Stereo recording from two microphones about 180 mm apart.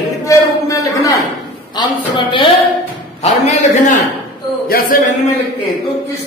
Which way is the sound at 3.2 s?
40° left (ahead or behind).